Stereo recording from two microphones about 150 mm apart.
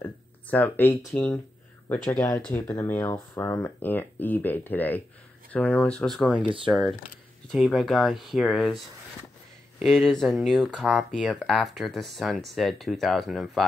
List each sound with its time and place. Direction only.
0.0 s speech: 10° left (ahead or behind)
2.4 s speech: 10° left (ahead or behind)
6.4 s speech: 35° right (ahead or behind)
6.7 s speech: centre (ahead or behind)